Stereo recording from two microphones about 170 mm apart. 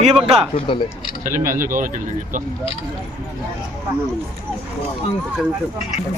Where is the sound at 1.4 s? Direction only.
55° right (ahead or behind).